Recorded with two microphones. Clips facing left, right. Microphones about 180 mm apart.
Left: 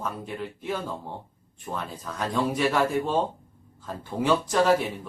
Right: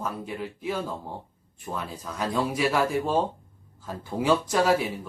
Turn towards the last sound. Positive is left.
turn(degrees=-5)  # may be behind; listen again after turning